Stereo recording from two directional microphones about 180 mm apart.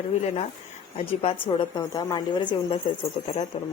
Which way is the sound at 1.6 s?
25° left (ahead or behind).